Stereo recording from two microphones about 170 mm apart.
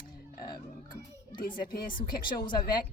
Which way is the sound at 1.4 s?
60° left (ahead or behind).